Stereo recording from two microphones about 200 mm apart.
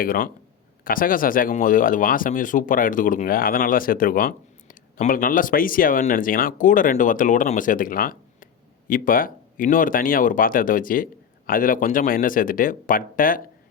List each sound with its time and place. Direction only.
0.0 s speech: 45° left (ahead or behind)